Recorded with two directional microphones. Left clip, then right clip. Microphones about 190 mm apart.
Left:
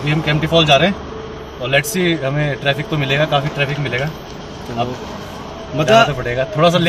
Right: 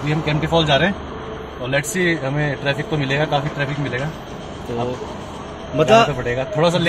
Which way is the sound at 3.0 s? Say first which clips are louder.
Left 5 dB; 10° left (ahead or behind).